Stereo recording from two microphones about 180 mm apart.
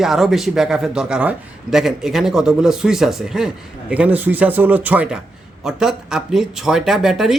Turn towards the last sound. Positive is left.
turn(degrees=0)  # may be behind; listen again after turning